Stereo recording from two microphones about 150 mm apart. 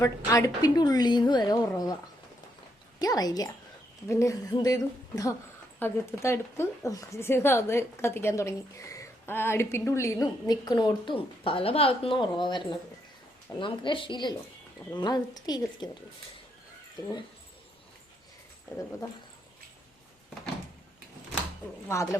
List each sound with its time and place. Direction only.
0.0 s a woman's voice: 20° left (ahead or behind)
3.0 s a woman's voice: 25° left (ahead or behind)